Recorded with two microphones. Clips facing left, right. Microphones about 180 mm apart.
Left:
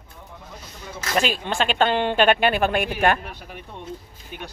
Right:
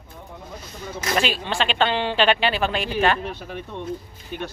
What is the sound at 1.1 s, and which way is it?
Speech, 45° left (ahead or behind).